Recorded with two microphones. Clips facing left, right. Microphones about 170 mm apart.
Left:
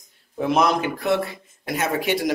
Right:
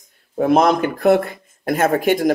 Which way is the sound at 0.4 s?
50° right (ahead or behind).